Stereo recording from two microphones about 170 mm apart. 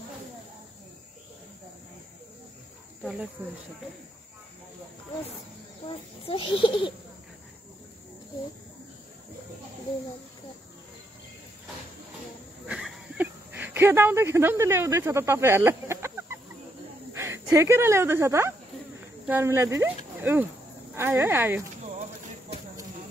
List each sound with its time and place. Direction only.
3.0 s speech: 5° right (ahead or behind)
5.9 s a child's voice: 30° left (ahead or behind)
12.6 s a sound: 5° right (ahead or behind)
17.1 s speech: 15° right (ahead or behind)
20.2 s cricket: 10° right (ahead or behind)
20.9 s speech: 15° right (ahead or behind)